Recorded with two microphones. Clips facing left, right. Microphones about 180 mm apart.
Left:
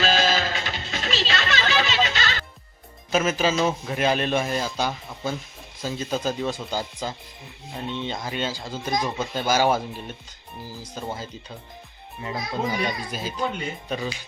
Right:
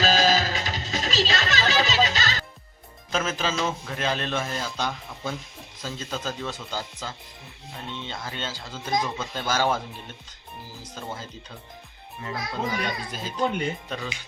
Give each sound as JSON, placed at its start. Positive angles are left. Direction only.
{"t": 0.0, "sound": "music", "side_deg": -40}
{"t": 3.1, "sound": "speech", "side_deg": 10}